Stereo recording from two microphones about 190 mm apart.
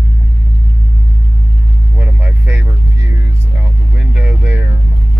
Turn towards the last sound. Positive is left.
turn(degrees=-10)  # may be behind; listen again after turning